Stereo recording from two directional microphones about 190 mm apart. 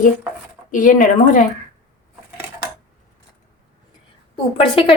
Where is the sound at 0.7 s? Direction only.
45° left (ahead or behind).